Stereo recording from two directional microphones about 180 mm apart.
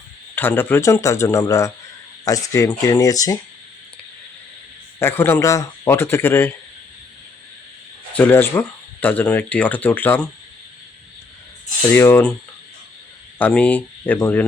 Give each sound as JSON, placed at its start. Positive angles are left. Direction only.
{"t": 0.3, "sound": "speech", "side_deg": 10}
{"t": 4.9, "sound": "speech", "side_deg": 15}
{"t": 8.1, "sound": "speech", "side_deg": 10}
{"t": 11.9, "sound": "speech", "side_deg": 10}
{"t": 13.4, "sound": "speech", "side_deg": 10}